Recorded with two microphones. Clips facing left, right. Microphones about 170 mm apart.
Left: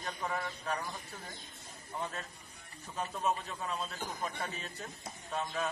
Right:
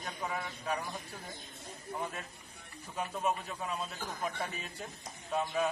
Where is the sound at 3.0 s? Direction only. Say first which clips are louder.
Even; 10° right (ahead or behind).